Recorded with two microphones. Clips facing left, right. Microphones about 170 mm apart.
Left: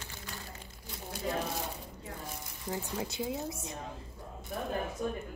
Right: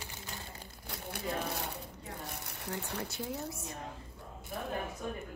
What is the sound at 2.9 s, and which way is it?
Speech, 20° left (ahead or behind).